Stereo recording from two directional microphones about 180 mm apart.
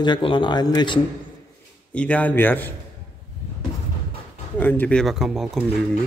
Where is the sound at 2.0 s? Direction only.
5° left (ahead or behind).